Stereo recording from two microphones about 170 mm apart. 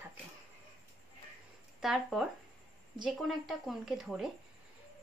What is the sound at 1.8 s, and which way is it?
Speech, centre (ahead or behind).